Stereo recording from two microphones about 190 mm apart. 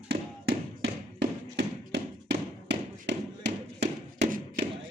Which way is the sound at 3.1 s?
65° right (ahead or behind).